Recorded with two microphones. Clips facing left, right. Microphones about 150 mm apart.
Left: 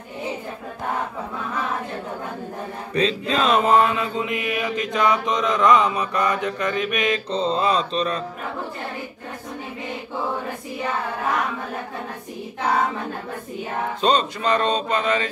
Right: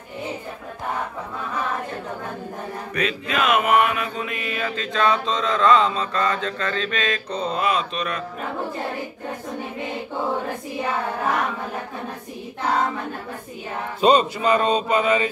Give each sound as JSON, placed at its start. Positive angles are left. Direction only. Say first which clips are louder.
{"t": 2.9, "sound": "mantra", "louder": "left 4 dB", "side_deg": 30}
{"t": 14.0, "sound": "speech", "louder": "right 4 dB", "side_deg": -10}